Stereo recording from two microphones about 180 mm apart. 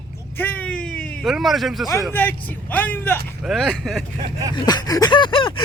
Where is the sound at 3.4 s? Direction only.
Centre (ahead or behind).